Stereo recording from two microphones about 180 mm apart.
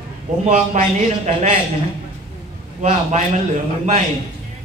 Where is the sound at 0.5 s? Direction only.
40° right (ahead or behind).